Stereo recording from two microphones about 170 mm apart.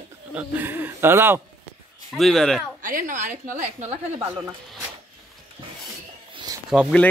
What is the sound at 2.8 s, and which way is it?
A woman's voice, 55° right (ahead or behind).